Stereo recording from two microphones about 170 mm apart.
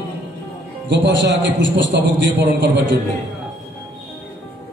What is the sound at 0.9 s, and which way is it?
A man's voice, 90° right.